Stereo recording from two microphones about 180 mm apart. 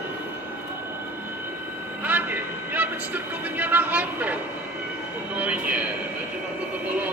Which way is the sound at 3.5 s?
10° right (ahead or behind).